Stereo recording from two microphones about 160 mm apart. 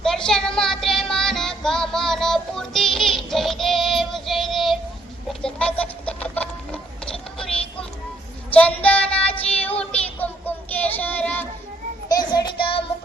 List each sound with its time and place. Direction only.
0.0 s child singing: 5° left (ahead or behind)
5.5 s a sound: 5° left (ahead or behind)
8.4 s child singing: 10° left (ahead or behind)
12.0 s child singing: 25° left (ahead or behind)